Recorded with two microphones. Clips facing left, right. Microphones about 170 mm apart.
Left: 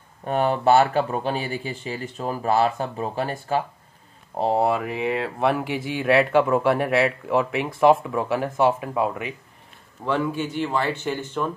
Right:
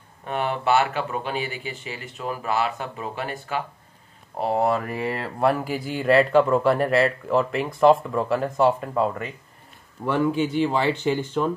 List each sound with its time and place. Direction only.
0.2 s speech: 40° left (ahead or behind)
4.6 s speech: 10° left (ahead or behind)
10.6 s speech: 15° right (ahead or behind)